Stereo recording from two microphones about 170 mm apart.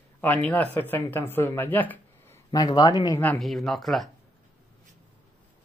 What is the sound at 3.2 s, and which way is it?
Speech, 5° left (ahead or behind).